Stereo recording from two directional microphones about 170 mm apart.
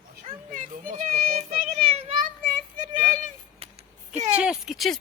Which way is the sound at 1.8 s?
35° right (ahead or behind).